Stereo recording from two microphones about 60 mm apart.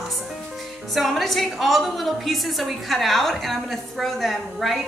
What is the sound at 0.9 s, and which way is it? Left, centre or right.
A woman's voice, centre.